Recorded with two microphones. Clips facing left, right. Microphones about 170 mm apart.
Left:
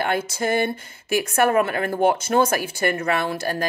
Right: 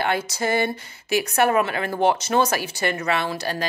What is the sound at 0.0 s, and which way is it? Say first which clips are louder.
A woman's voice: left 1 dB; 50° left (ahead or behind).